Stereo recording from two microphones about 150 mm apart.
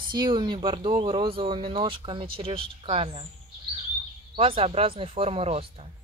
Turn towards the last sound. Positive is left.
turn(degrees=-40)  # may be behind; listen again after turning